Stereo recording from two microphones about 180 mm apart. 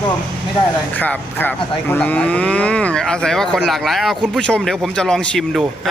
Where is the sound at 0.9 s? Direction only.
10° left (ahead or behind).